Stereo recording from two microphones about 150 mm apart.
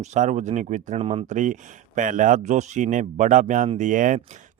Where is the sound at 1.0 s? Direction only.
40° right (ahead or behind).